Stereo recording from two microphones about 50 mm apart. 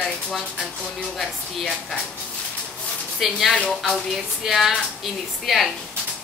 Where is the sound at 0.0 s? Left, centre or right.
Centre.